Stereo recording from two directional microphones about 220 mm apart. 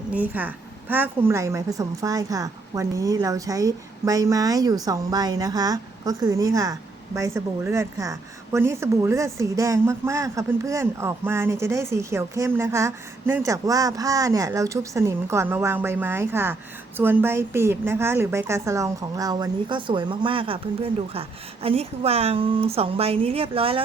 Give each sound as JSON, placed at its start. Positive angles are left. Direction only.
{"t": 0.1, "sound": "a woman's voice", "side_deg": -5}